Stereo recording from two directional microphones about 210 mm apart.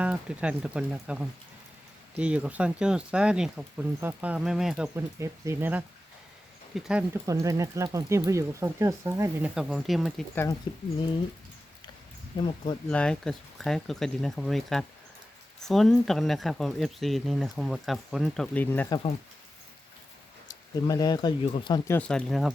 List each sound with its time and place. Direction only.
0.0 s speech: 5° right (ahead or behind)
4.9 s speech: 15° right (ahead or behind)
7.1 s speech: 15° right (ahead or behind)
10.3 s speech: 15° left (ahead or behind)
12.4 s speech: 20° left (ahead or behind)
12.9 s speech: 5° left (ahead or behind)
20.8 s speech: 20° left (ahead or behind)
21.9 s speech: 5° left (ahead or behind)